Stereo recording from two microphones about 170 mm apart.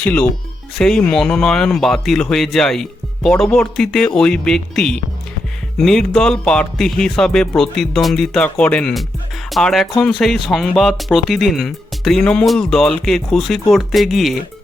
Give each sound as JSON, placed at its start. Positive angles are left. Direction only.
{"t": 0.0, "sound": "speech", "side_deg": 5}